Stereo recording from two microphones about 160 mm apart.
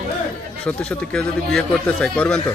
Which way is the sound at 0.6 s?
5° left (ahead or behind).